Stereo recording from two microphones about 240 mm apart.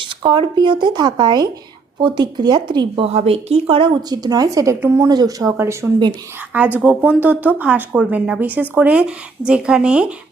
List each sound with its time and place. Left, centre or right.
0.0 s speech: centre